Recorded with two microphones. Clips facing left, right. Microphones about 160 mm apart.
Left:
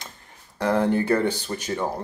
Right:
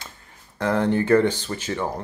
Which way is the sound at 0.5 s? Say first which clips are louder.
Even; 10° left (ahead or behind).